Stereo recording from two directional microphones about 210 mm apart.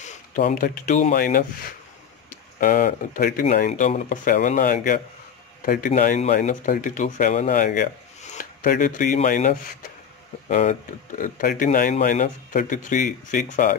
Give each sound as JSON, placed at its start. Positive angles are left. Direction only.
{"t": 0.5, "sound": "speech", "side_deg": 40}
{"t": 2.6, "sound": "speech", "side_deg": 40}